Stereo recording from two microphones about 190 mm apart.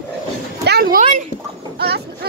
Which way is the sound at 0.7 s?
50° right (ahead or behind).